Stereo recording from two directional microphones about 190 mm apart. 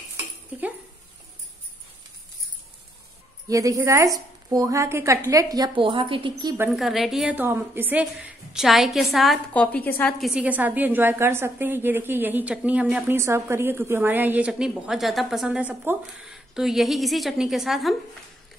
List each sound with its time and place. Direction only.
0.2 s a sound: 10° right (ahead or behind)
3.4 s a woman's voice: 15° right (ahead or behind)
6.7 s a woman's voice: centre (ahead or behind)
10.2 s a woman's voice: 5° right (ahead or behind)